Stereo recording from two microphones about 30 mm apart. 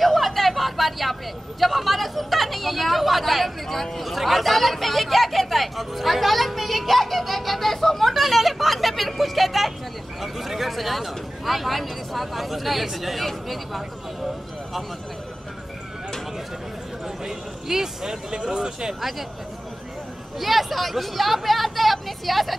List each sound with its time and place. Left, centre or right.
0.0 s a sound: centre
1.6 s speech: centre
3.6 s speech: centre
8.1 s a sound: centre
10.2 s speech: centre
17.2 s speech: centre
18.3 s speech: right
18.9 s speech: centre
20.3 s speech: centre